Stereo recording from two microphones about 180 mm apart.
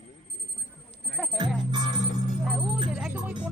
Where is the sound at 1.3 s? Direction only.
25° right (ahead or behind).